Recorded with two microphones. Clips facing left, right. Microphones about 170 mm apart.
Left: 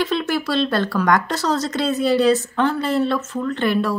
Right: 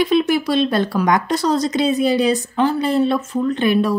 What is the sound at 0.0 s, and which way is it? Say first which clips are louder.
Speech: right 5 dB; 15° right (ahead or behind).